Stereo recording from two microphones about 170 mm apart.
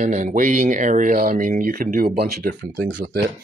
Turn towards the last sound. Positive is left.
turn(degrees=-55)  # may be behind; listen again after turning